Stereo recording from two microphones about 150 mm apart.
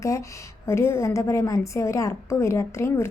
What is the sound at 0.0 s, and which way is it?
A woman's voice, 20° left (ahead or behind).